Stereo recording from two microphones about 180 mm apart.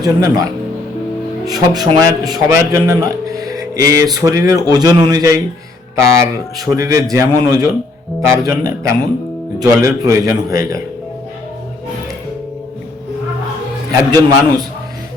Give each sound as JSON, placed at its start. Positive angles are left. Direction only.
{"t": 0.0, "sound": "a man's voice", "side_deg": -20}
{"t": 1.5, "sound": "a man's voice", "side_deg": -20}
{"t": 14.1, "sound": "a man's voice", "side_deg": -20}